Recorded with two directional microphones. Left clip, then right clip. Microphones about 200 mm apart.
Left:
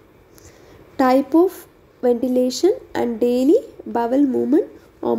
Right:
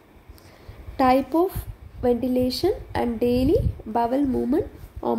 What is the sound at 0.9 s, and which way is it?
A woman's voice, 10° left (ahead or behind).